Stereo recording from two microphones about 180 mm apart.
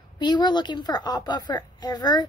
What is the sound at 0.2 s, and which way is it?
A woman's voice, 25° left (ahead or behind).